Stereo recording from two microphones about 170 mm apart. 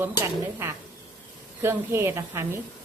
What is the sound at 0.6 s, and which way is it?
A woman's voice, 15° right (ahead or behind).